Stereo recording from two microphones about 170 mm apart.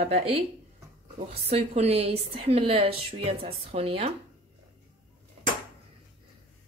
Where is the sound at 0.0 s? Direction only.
35° right (ahead or behind).